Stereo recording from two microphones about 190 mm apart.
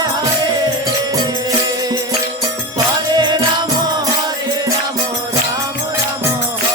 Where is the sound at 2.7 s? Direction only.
20° right (ahead or behind).